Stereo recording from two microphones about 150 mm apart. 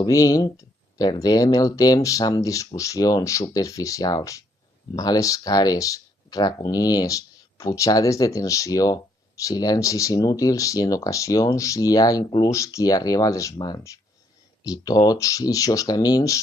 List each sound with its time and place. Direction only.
0.0 s speech: 25° left (ahead or behind)